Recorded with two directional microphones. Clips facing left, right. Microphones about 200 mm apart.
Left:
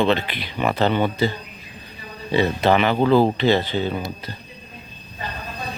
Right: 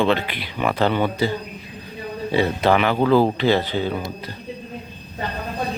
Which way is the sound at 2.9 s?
15° left (ahead or behind).